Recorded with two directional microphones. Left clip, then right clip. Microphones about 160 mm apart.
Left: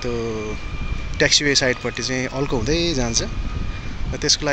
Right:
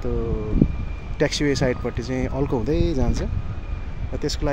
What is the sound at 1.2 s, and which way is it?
Speech, 20° right (ahead or behind).